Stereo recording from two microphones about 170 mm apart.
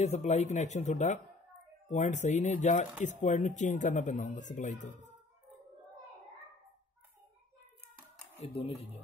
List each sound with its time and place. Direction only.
0.0 s speech: 40° left (ahead or behind)
8.4 s speech: 35° left (ahead or behind)